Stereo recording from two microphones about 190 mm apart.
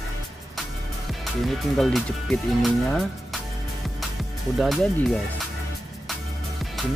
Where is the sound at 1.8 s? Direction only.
Centre (ahead or behind).